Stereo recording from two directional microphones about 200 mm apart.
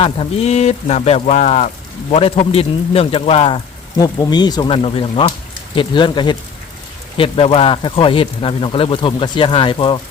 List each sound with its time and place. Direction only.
0.0 s speech: 30° left (ahead or behind)